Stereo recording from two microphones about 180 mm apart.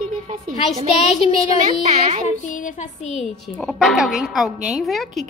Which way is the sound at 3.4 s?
Centre (ahead or behind).